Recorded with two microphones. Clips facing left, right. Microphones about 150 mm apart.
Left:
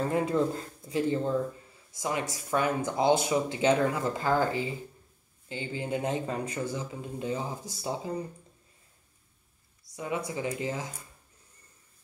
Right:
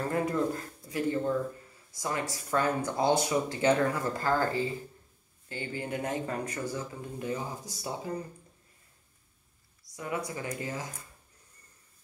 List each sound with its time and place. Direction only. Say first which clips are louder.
0.1 s speech: left 2 dB; 25° left (ahead or behind)
9.9 s speech: left 2 dB; 20° left (ahead or behind)